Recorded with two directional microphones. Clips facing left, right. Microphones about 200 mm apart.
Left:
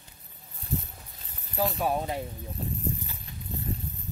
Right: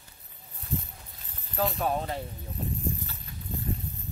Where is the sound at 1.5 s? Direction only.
5° left (ahead or behind).